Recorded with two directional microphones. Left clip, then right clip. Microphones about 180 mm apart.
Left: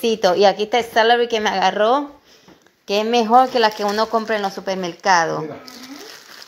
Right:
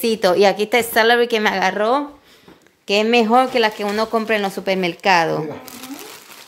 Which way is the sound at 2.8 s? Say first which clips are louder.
Right 2 dB; 15° right (ahead or behind).